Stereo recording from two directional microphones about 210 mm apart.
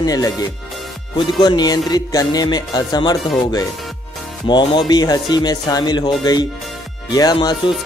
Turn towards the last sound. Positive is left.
turn(degrees=20)  # may be behind; listen again after turning